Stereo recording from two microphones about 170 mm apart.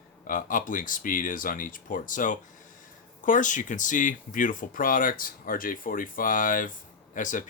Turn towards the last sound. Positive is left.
turn(degrees=50)  # may be behind; listen again after turning